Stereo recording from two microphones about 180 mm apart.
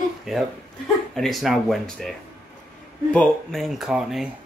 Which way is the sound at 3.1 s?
Centre (ahead or behind).